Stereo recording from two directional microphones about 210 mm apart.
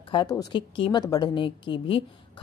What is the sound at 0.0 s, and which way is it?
A woman's voice, 20° left (ahead or behind).